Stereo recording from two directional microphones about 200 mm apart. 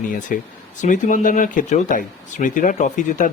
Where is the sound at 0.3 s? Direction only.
40° left (ahead or behind).